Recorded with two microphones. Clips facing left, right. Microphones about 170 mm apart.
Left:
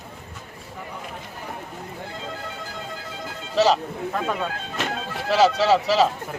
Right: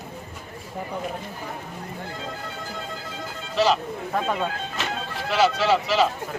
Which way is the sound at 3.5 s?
35° left (ahead or behind).